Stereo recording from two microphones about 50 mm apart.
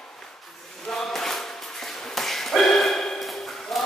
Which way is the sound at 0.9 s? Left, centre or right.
Centre.